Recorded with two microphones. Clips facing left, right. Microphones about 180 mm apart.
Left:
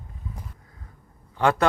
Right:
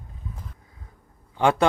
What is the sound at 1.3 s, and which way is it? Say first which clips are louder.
Speech: right 1 dB; 20° right (ahead or behind).